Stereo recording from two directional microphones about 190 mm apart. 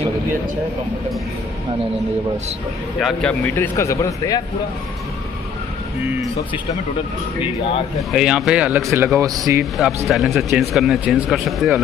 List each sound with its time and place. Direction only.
3.0 s speech: centre (ahead or behind)
8.1 s speech: centre (ahead or behind)
10.0 s speech: centre (ahead or behind)